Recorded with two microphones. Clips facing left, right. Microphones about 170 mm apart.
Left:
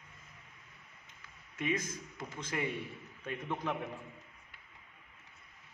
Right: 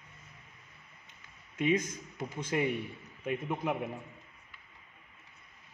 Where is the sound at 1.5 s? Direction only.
20° right (ahead or behind).